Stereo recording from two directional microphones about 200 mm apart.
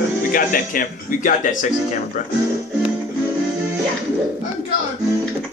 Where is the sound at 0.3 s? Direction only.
45° left (ahead or behind).